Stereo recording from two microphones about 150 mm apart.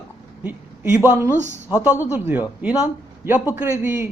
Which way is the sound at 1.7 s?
10° right (ahead or behind).